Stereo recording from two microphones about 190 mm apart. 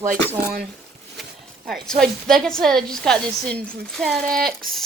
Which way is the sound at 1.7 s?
Centre (ahead or behind).